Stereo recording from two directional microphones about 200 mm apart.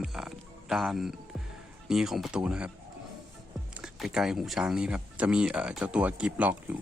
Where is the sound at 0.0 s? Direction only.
Centre (ahead or behind).